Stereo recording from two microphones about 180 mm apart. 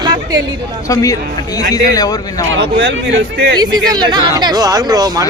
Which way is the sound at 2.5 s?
85° right.